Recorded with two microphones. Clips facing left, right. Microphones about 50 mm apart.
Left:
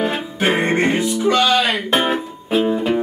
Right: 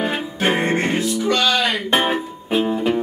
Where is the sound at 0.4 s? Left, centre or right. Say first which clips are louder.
Left 2 dB; centre.